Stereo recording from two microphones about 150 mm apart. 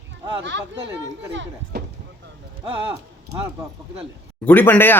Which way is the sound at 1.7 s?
90° right.